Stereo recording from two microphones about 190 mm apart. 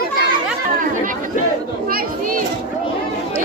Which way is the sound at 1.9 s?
50° right (ahead or behind).